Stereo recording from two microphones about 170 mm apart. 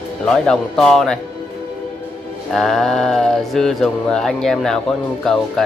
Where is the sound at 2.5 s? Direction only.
5° left (ahead or behind).